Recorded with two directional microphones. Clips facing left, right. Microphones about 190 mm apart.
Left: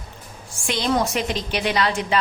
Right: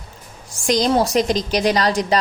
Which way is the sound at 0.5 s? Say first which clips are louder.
Right 5 dB; 40° right (ahead or behind).